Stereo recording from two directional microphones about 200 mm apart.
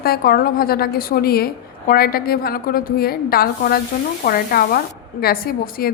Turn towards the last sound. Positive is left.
turn(degrees=50)  # may be behind; listen again after turning